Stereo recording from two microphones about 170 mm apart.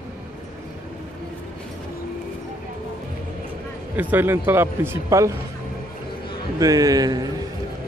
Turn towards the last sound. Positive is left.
turn(degrees=-20)  # may be behind; listen again after turning